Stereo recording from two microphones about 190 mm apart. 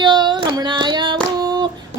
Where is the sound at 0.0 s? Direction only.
25° right (ahead or behind).